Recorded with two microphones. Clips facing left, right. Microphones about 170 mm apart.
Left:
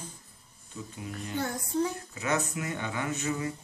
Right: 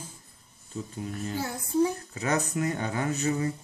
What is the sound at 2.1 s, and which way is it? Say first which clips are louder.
Speech: right 1 dB; 35° right (ahead or behind).